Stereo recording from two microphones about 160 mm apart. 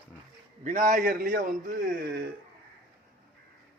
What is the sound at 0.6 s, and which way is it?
A man's voice, 50° right (ahead or behind).